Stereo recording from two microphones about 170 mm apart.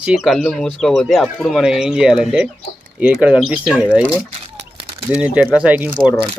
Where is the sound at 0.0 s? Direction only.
5° right (ahead or behind).